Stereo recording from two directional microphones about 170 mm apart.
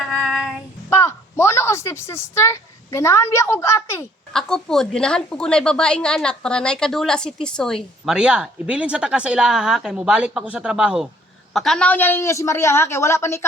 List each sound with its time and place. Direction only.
0.1 s child singing: centre (ahead or behind)
0.9 s a woman's voice: 15° left (ahead or behind)
4.3 s a woman's voice: 5° left (ahead or behind)